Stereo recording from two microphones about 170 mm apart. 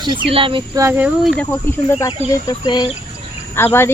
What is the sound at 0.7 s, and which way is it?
Speech, 15° right (ahead or behind).